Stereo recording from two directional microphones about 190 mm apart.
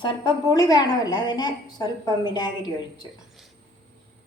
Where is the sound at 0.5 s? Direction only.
20° left (ahead or behind).